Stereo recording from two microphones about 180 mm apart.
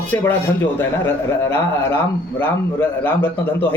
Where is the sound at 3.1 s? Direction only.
10° left (ahead or behind).